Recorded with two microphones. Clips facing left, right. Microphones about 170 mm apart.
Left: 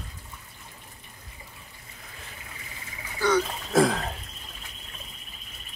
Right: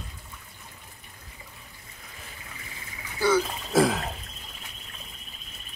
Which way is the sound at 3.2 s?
5° right (ahead or behind).